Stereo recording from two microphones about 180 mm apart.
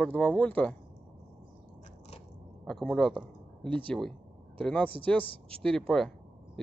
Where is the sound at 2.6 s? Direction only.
5° left (ahead or behind).